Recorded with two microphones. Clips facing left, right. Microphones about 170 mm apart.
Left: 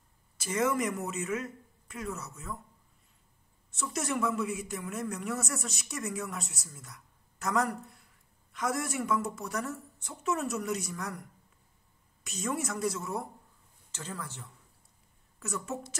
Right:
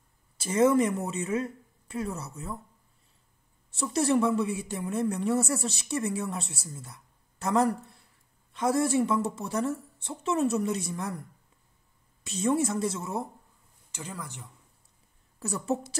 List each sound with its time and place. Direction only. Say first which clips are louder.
0.4 s speech: right 7 dB; 30° right (ahead or behind)
3.7 s a woman's voice: right 8 dB; 30° right (ahead or behind)
13.9 s speech: right 1 dB; 15° right (ahead or behind)
15.3 s a woman's voice: right 7 dB; 35° right (ahead or behind)